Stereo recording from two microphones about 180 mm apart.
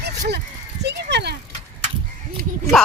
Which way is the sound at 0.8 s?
70° right (ahead or behind).